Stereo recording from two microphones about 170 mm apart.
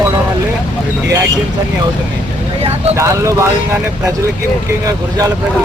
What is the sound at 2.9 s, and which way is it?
Speech, 15° right (ahead or behind).